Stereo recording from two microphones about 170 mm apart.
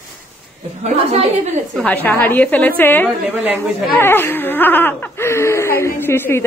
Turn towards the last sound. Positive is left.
turn(degrees=15)  # may be behind; listen again after turning